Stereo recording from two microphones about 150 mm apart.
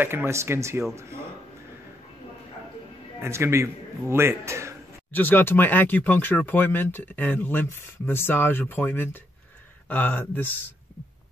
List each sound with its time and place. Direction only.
0.0 s speech: 15° right (ahead or behind)
3.2 s speech: 15° right (ahead or behind)
5.1 s speech: 15° left (ahead or behind)